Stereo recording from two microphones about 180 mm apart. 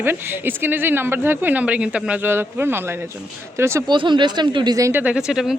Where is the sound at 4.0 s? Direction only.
25° right (ahead or behind); by 5.4 s 5° right (ahead or behind).